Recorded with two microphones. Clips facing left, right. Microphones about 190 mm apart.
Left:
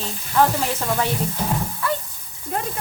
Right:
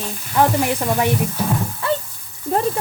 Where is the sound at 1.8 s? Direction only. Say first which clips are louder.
Right 4 dB; 25° right (ahead or behind).